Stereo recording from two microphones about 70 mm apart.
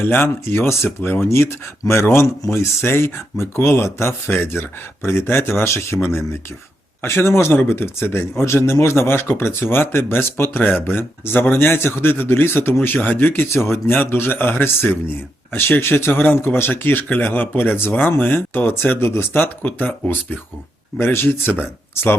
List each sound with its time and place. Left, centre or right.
0.0 s speech: left